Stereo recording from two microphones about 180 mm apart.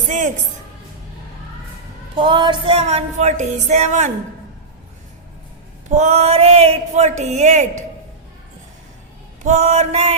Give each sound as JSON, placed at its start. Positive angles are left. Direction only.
{"t": 0.1, "sound": "a man's voice", "side_deg": -40}
{"t": 2.1, "sound": "music", "side_deg": -25}
{"t": 6.0, "sound": "music", "side_deg": -35}
{"t": 9.4, "sound": "music", "side_deg": -40}